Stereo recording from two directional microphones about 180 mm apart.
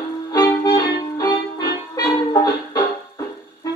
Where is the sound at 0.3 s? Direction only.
20° left (ahead or behind).